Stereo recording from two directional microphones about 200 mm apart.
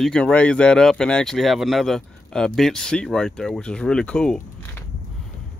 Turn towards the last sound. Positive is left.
turn(degrees=5)  # may be behind; listen again after turning